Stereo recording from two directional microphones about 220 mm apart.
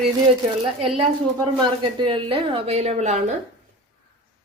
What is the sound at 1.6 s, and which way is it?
Speech, 20° right (ahead or behind).